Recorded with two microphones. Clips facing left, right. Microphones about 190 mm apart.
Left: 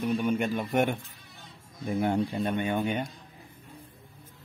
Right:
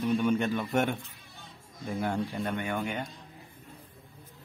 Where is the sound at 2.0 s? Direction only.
20° left (ahead or behind).